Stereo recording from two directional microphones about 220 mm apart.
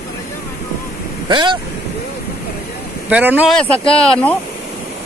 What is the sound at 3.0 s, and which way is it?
Speech, 5° right (ahead or behind).